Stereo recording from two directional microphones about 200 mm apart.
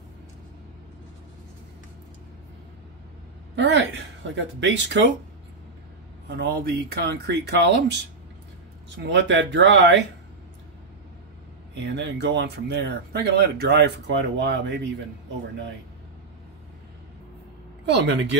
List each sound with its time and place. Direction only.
3.5 s speech: 65° right (ahead or behind)
6.2 s speech: 50° right (ahead or behind)
8.9 s speech: 65° right (ahead or behind)
11.8 s speech: 60° right (ahead or behind)
17.8 s speech: 65° right (ahead or behind)